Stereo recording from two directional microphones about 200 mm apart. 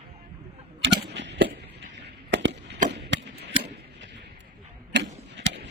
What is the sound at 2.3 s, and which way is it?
Chop, 65° right (ahead or behind).